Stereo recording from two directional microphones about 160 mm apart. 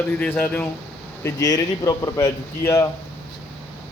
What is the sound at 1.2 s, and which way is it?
A man's voice, 20° left (ahead or behind).